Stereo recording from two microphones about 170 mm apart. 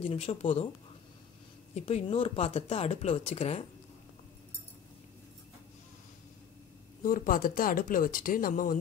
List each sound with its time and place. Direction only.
0.1 s speech: 35° left (ahead or behind)
1.8 s speech: 40° left (ahead or behind)
7.0 s speech: 55° left (ahead or behind)